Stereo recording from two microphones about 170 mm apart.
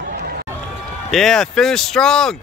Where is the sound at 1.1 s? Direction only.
Centre (ahead or behind).